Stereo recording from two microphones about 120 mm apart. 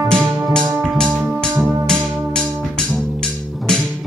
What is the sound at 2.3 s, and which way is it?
Music, 5° left (ahead or behind).